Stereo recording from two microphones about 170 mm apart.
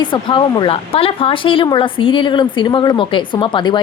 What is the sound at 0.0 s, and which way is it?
A woman's voice, 30° left (ahead or behind).